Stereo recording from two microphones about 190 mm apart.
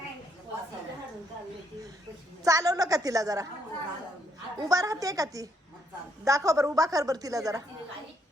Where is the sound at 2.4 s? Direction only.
20° right (ahead or behind).